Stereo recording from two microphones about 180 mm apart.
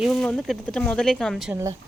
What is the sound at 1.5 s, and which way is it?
Speech, 15° right (ahead or behind).